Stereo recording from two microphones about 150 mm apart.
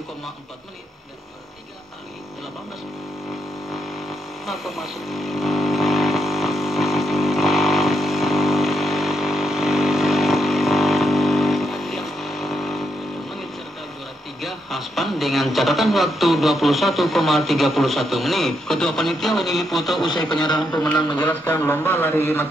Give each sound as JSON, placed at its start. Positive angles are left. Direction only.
{"t": 3.7, "sound": "vehicle", "side_deg": 0}
{"t": 14.4, "sound": "speech", "side_deg": 0}
{"t": 20.1, "sound": "speech", "side_deg": 30}
{"t": 21.2, "sound": "a man's voice", "side_deg": 10}